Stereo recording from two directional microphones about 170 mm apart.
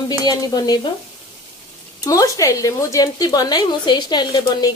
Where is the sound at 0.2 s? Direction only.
20° left (ahead or behind).